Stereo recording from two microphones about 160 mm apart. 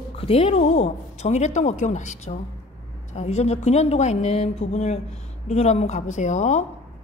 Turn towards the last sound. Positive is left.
turn(degrees=50)  # may be behind; listen again after turning